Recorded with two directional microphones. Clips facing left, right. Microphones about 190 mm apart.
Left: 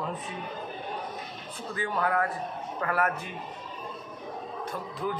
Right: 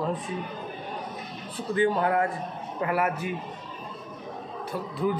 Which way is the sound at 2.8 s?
10° right (ahead or behind).